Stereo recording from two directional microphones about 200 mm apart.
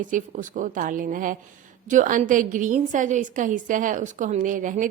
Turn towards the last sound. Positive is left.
turn(degrees=-40)  # may be behind; listen again after turning